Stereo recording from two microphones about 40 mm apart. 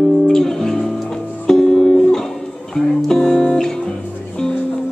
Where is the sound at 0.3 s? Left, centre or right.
Centre.